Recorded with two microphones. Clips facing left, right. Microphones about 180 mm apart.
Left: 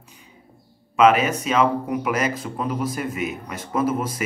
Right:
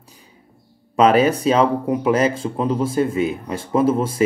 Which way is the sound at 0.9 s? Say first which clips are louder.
Right 3 dB; 35° right (ahead or behind).